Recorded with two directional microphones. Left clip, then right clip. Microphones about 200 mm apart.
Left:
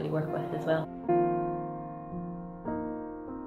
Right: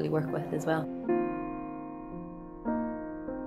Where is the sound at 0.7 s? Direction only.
50° right (ahead or behind).